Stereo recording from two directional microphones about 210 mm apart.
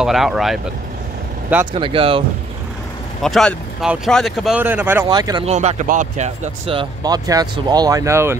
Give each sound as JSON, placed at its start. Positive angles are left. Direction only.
{"t": 0.0, "sound": "speech", "side_deg": 0}
{"t": 1.7, "sound": "speech", "side_deg": -25}
{"t": 3.2, "sound": "speech", "side_deg": 0}
{"t": 5.4, "sound": "speech", "side_deg": -30}